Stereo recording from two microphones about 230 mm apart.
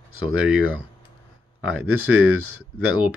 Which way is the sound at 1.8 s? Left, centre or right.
Right.